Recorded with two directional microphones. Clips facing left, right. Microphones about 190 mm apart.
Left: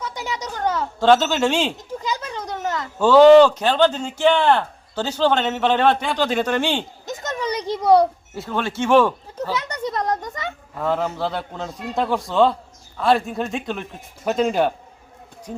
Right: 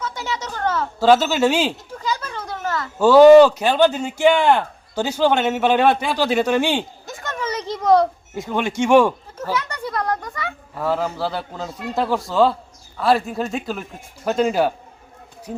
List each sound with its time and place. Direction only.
0.0 s speech: 15° left (ahead or behind)
0.9 s speech: 5° right (ahead or behind)
1.9 s a sound: 20° left (ahead or behind)
3.0 s speech: 10° right (ahead or behind)
7.0 s a sound: 20° left (ahead or behind)
8.4 s speech: 15° right (ahead or behind)
9.4 s a child's voice: 20° left (ahead or behind)
10.8 s a man's voice: 5° right (ahead or behind)